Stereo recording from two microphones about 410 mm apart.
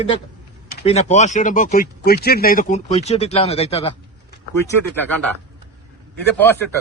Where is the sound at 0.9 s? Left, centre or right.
Centre.